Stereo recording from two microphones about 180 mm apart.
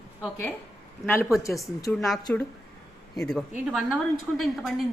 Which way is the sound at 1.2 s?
Centre (ahead or behind).